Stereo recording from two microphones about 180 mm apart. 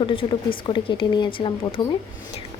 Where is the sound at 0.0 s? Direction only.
30° left (ahead or behind).